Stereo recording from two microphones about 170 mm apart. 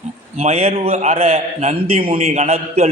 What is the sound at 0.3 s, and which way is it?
A man's voice, 40° right (ahead or behind).